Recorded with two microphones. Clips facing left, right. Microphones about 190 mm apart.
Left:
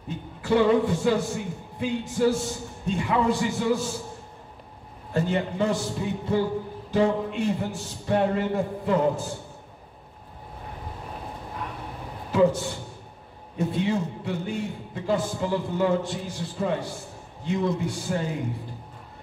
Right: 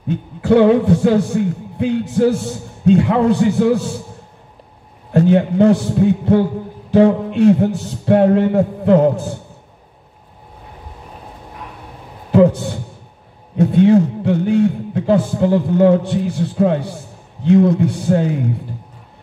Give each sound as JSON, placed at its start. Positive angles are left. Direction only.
{"t": 0.4, "sound": "a man's voice", "side_deg": -65}
{"t": 5.1, "sound": "a man's voice", "side_deg": -65}
{"t": 13.6, "sound": "a man's voice", "side_deg": -70}